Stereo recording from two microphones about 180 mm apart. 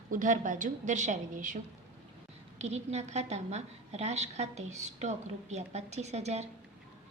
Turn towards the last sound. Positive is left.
turn(degrees=-35)  # may be behind; listen again after turning